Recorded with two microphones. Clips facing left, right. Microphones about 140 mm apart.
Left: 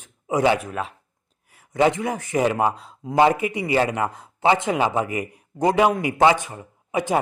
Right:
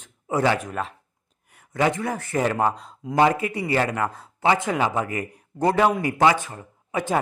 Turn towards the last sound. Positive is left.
turn(degrees=15)  # may be behind; listen again after turning